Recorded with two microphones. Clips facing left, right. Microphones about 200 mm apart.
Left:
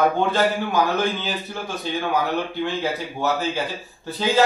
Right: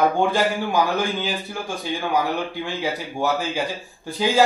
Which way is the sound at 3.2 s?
10° right (ahead or behind).